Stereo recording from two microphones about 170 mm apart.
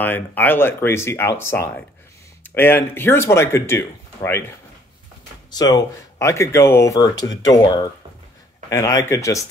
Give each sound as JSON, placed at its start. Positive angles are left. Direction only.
{"t": 0.0, "sound": "speech", "side_deg": 10}
{"t": 5.5, "sound": "speech", "side_deg": 25}